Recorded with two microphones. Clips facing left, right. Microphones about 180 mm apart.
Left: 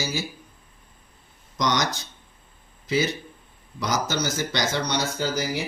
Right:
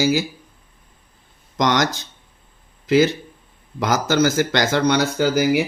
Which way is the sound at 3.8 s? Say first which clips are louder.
Right 8 dB; 90° right.